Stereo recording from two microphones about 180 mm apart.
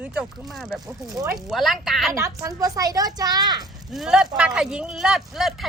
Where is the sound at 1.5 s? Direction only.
Centre (ahead or behind).